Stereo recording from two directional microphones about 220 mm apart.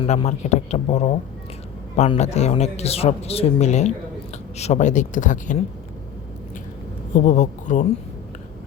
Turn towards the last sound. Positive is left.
turn(degrees=35)  # may be behind; listen again after turning